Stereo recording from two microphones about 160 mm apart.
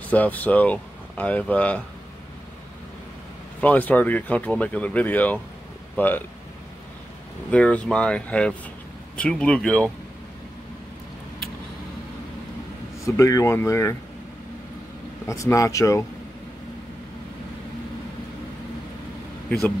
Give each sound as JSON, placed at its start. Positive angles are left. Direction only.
{"t": 0.1, "sound": "speech", "side_deg": 10}
{"t": 3.6, "sound": "speech", "side_deg": 10}
{"t": 7.5, "sound": "speech", "side_deg": 5}
{"t": 13.0, "sound": "speech", "side_deg": 20}
{"t": 15.2, "sound": "speech", "side_deg": 20}